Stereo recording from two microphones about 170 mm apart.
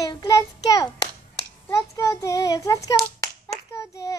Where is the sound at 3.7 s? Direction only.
20° left (ahead or behind).